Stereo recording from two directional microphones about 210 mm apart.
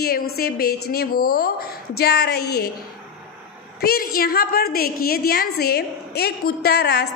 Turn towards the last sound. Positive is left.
turn(degrees=50)  # may be behind; listen again after turning